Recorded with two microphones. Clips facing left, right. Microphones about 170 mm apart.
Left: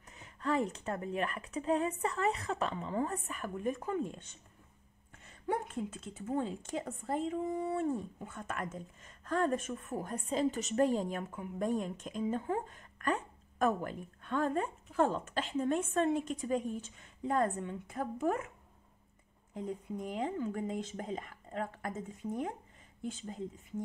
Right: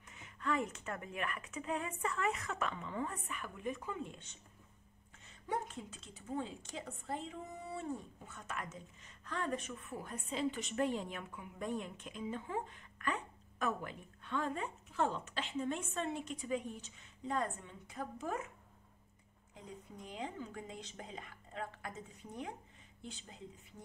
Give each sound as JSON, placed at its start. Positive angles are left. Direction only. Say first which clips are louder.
{"t": 0.1, "sound": "a woman's voice", "louder": "left 4 dB", "side_deg": 35}
{"t": 19.5, "sound": "a woman's voice", "louder": "left 12 dB", "side_deg": 50}